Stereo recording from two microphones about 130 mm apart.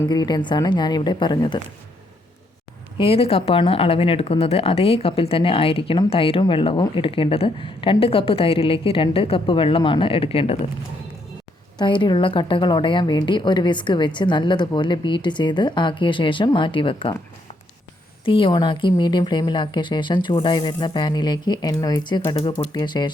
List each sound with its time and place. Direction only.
0.1 s a woman's voice: 35° left (ahead or behind)
3.0 s speech: 50° left (ahead or behind)
11.8 s a woman's voice: 35° left (ahead or behind)
18.3 s a woman's voice: 40° left (ahead or behind)